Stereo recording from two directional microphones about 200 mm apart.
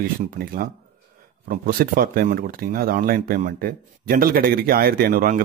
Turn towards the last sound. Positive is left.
turn(degrees=-45)  # may be behind; listen again after turning